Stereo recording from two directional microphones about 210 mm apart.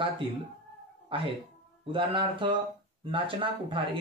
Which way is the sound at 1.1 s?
25° right (ahead or behind).